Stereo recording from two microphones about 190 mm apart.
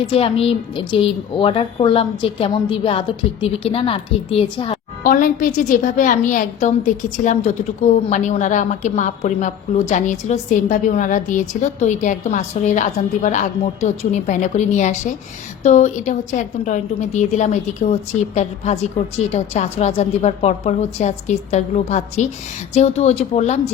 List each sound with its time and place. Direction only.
0.0 s a woman's voice: 30° left (ahead or behind)
5.0 s a woman's voice: 45° left (ahead or behind)